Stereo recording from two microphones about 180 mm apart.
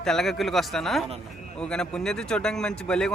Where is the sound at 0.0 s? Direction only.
Centre (ahead or behind).